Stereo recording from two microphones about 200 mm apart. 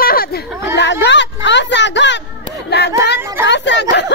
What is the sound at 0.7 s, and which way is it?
Speech, 60° left (ahead or behind).